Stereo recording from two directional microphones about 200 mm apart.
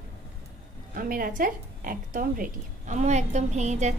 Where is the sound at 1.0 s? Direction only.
45° right (ahead or behind).